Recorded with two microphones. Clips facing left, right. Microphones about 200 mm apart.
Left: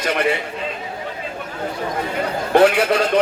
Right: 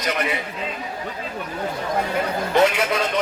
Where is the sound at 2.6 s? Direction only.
30° left (ahead or behind).